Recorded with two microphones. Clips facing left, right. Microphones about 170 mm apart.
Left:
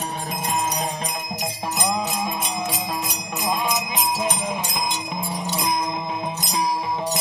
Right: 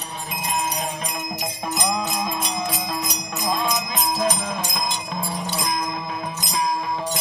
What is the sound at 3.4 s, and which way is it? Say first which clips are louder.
Jingle bell: even; 10° left (ahead or behind).